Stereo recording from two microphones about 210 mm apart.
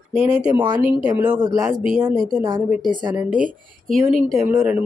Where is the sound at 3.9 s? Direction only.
Centre (ahead or behind).